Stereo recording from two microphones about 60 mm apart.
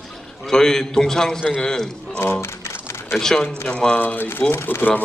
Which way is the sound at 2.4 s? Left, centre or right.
Left.